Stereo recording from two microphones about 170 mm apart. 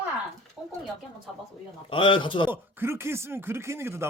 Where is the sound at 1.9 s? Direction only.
30° left (ahead or behind).